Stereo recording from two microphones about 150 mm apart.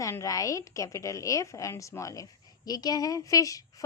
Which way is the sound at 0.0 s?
20° left (ahead or behind).